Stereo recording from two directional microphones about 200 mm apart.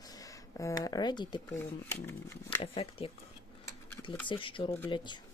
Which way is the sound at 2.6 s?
25° left (ahead or behind).